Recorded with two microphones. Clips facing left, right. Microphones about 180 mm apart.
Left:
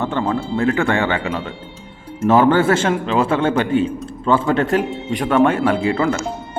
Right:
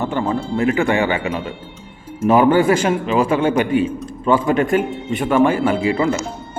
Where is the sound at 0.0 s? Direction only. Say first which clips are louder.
Even; 15° right (ahead or behind).